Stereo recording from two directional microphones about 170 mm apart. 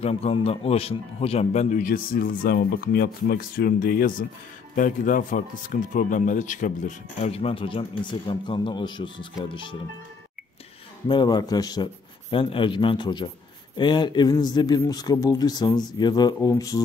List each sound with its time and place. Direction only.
0.0 s speech: 35° left (ahead or behind)
7.2 s speech: 35° left (ahead or behind)
11.1 s speech: 25° left (ahead or behind)